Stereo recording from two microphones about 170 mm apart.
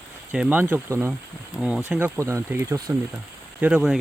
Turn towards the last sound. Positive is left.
turn(degrees=-5)  # may be behind; listen again after turning